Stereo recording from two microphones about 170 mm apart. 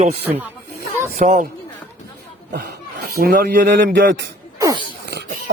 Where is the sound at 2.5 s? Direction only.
65° right (ahead or behind); by 4.2 s 90° right.